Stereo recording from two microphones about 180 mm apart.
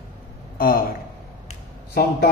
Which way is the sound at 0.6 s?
55° left (ahead or behind).